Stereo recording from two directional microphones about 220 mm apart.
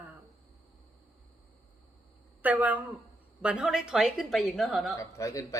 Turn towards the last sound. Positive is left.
turn(degrees=15)  # may be behind; listen again after turning